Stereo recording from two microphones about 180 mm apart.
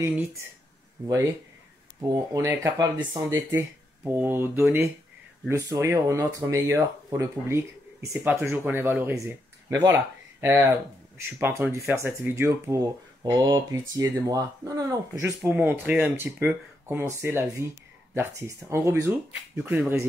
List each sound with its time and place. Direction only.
1.0 s speech: 20° right (ahead or behind)